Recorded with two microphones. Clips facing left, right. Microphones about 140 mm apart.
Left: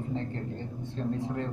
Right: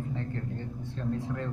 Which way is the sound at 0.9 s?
25° left (ahead or behind).